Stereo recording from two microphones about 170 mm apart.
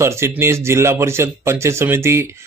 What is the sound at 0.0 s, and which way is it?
Speech, 15° right (ahead or behind).